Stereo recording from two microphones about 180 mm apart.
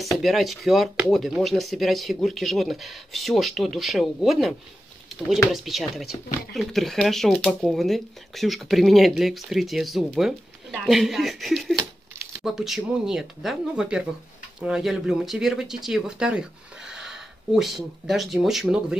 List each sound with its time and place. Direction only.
0.0 s speech: centre (ahead or behind)
6.2 s speech: 50° left (ahead or behind)
6.5 s speech: centre (ahead or behind)